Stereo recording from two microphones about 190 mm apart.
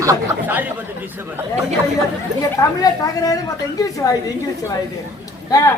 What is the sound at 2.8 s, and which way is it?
Speech, 20° left (ahead or behind).